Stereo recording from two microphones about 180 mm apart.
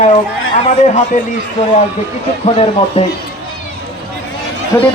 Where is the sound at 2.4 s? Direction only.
35° left (ahead or behind).